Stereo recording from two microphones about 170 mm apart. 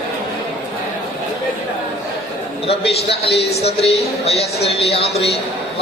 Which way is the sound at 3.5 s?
40° left (ahead or behind).